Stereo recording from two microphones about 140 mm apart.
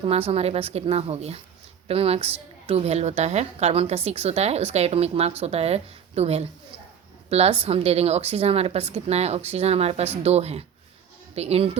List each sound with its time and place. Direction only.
0.0 s a woman's voice: 45° right (ahead or behind)